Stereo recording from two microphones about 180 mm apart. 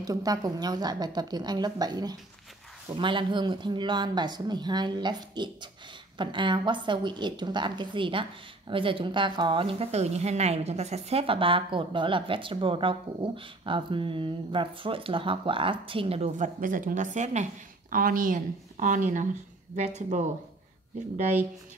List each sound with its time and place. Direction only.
0.0 s a woman's voice: 20° right (ahead or behind); by 19.2 s 45° right (ahead or behind)